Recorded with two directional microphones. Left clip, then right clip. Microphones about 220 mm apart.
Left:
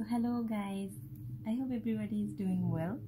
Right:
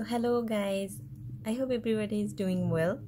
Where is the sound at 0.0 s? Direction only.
50° right (ahead or behind).